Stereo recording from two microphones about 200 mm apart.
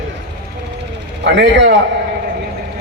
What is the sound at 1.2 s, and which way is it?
Speech, 60° right (ahead or behind).